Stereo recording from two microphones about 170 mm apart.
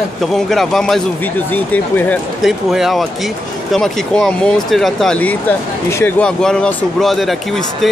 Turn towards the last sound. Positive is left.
turn(degrees=0)  # may be behind; listen again after turning